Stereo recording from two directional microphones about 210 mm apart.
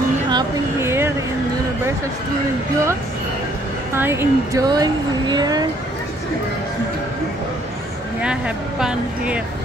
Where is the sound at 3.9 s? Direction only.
10° right (ahead or behind).